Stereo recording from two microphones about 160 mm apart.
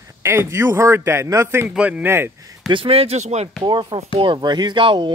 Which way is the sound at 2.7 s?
35° right (ahead or behind).